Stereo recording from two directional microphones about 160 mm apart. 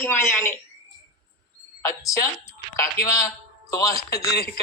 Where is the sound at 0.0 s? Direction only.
15° left (ahead or behind).